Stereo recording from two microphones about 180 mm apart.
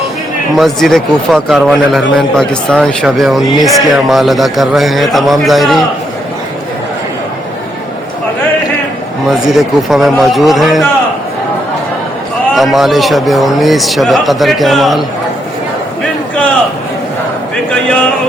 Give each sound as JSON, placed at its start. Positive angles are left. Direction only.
{"t": 0.5, "sound": "a man's voice", "side_deg": 0}
{"t": 9.5, "sound": "a man's voice", "side_deg": 0}
{"t": 12.5, "sound": "a man's voice", "side_deg": 0}